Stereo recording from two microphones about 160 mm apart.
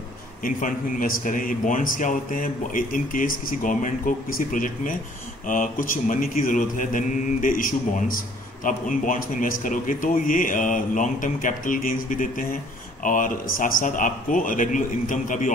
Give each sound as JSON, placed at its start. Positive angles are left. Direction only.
{"t": 0.4, "sound": "speech", "side_deg": 55}